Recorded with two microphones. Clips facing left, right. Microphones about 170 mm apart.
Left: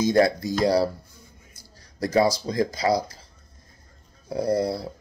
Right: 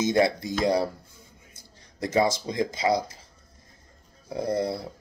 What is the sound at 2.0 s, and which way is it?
Speech, 25° right (ahead or behind).